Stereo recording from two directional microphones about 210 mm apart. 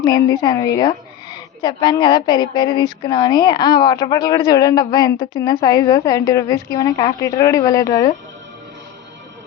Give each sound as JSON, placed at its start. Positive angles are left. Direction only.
{"t": 0.3, "sound": "a woman's voice", "side_deg": 15}